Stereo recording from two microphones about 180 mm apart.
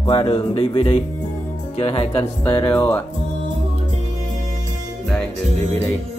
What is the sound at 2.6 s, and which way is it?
Music, 10° left (ahead or behind).